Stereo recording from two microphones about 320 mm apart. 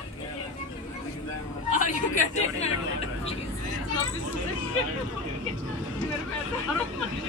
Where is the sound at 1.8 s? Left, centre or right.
Left.